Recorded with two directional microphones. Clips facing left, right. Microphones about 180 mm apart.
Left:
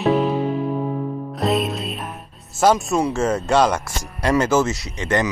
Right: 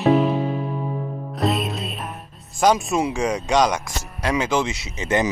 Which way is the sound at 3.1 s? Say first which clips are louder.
Left 2 dB; 15° right (ahead or behind).